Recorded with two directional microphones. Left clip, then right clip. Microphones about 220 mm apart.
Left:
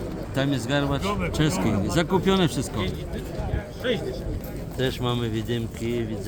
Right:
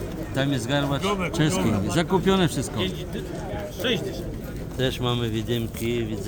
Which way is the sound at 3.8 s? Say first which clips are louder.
Even; 40° right (ahead or behind).